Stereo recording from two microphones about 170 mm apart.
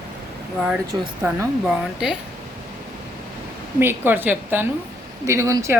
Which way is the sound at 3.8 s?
10° right (ahead or behind).